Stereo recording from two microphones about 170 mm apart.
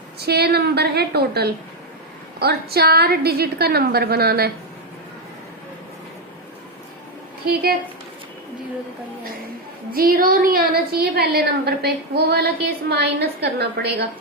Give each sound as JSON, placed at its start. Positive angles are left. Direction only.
{"t": 0.2, "sound": "a woman's voice", "side_deg": -70}
{"t": 7.4, "sound": "a woman's voice", "side_deg": -65}
{"t": 9.9, "sound": "a woman's voice", "side_deg": -60}